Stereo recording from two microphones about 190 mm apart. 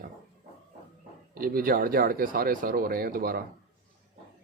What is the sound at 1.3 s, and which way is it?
Speech, 50° right (ahead or behind).